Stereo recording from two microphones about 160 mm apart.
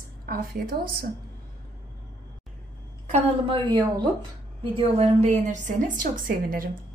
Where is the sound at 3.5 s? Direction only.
25° right (ahead or behind).